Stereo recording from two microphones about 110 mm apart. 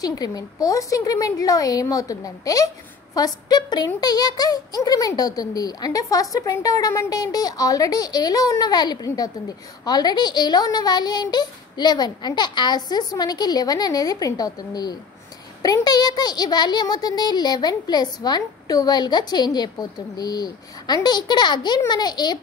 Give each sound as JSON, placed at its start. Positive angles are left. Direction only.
{"t": 0.0, "sound": "a child's voice", "side_deg": 35}